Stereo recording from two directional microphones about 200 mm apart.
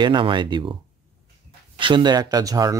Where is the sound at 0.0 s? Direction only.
25° right (ahead or behind).